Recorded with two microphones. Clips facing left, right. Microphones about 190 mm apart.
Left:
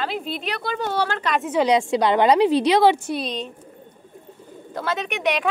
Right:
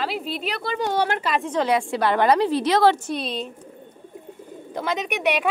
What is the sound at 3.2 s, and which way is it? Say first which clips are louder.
Speech: even; 5° right (ahead or behind).